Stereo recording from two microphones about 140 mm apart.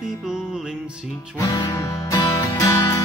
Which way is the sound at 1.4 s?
25° left (ahead or behind).